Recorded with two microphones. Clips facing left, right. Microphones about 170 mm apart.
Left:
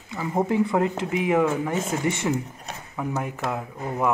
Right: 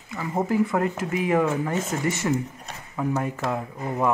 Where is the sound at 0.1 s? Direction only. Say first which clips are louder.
Left 1 dB; 15° left (ahead or behind).